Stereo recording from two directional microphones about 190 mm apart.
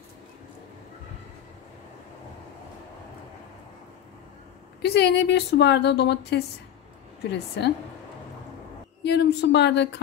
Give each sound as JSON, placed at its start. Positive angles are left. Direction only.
{"t": 4.8, "sound": "speech", "side_deg": 60}
{"t": 9.0, "sound": "speech", "side_deg": 60}